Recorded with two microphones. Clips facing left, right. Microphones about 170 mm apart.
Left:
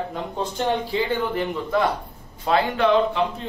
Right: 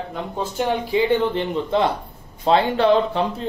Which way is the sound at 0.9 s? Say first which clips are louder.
Right 5 dB; 20° right (ahead or behind).